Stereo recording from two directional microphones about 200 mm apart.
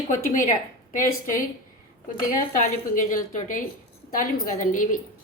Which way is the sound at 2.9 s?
40° left (ahead or behind).